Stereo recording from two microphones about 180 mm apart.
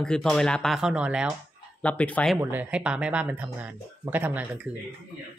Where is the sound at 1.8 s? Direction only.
5° left (ahead or behind).